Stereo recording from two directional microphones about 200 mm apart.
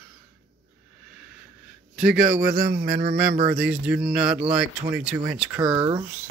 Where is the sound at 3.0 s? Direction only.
35° right (ahead or behind).